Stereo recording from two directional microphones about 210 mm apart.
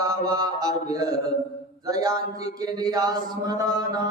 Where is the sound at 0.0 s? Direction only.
15° right (ahead or behind).